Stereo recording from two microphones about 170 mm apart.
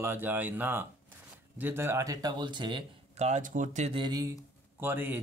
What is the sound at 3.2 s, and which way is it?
Speech, 45° right (ahead or behind).